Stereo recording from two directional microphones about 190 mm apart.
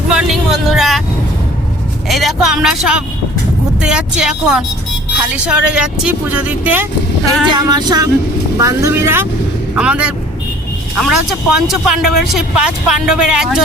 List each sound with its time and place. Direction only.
0.1 s speech: 5° right (ahead or behind)
2.0 s speech: centre (ahead or behind)
7.4 s a sound: 20° right (ahead or behind)
8.5 s speech: 15° right (ahead or behind)